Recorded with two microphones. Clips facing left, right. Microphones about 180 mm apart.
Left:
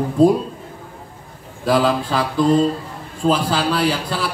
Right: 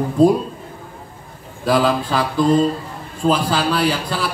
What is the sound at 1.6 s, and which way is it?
Speech, 25° left (ahead or behind).